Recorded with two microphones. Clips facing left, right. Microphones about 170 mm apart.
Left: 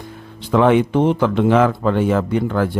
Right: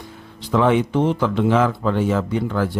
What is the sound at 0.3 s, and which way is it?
A man's voice, 55° left (ahead or behind).